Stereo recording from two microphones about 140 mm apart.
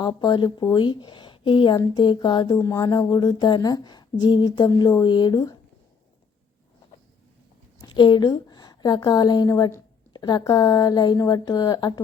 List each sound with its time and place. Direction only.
0.0 s speech: 30° left (ahead or behind)
7.8 s a woman's voice: 35° left (ahead or behind)